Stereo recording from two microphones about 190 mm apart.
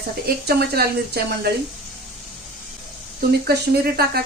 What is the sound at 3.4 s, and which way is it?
Speech, 55° right (ahead or behind).